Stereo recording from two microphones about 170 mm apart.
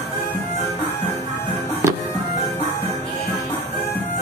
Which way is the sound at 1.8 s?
15° right (ahead or behind).